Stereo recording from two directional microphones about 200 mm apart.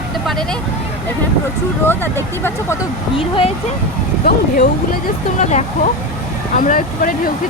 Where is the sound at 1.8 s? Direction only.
10° left (ahead or behind).